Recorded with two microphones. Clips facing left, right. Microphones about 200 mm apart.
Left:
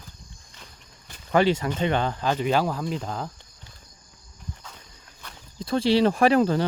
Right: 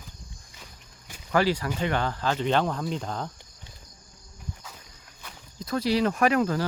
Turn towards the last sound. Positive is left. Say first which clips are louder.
# left 4 dB
turn(degrees=30)  # may be behind; listen again after turning